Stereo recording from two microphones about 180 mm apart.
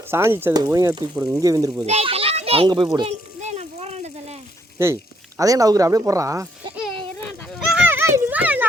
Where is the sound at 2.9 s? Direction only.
35° right (ahead or behind).